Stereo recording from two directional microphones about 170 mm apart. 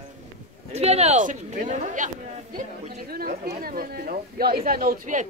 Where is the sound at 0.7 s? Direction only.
40° right (ahead or behind).